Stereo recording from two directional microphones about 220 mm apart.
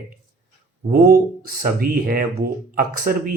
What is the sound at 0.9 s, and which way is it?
A man's voice, 40° right (ahead or behind).